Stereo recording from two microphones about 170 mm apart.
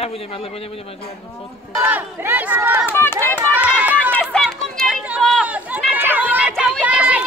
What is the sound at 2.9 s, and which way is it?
Speech, 15° left (ahead or behind).